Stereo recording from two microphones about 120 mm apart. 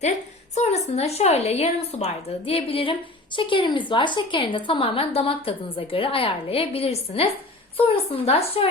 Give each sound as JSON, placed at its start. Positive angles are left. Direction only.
{"t": 0.5, "sound": "a woman's voice", "side_deg": 65}